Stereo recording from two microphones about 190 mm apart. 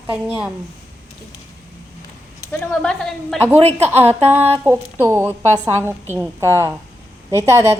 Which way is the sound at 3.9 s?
10° right (ahead or behind).